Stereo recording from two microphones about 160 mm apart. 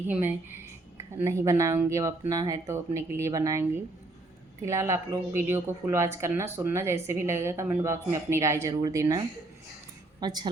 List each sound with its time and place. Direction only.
0.1 s speech: 10° right (ahead or behind)